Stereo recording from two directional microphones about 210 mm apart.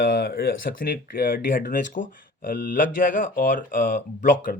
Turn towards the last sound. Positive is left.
turn(degrees=40)  # may be behind; listen again after turning